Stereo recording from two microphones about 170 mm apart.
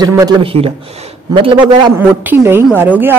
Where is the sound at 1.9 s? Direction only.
10° right (ahead or behind).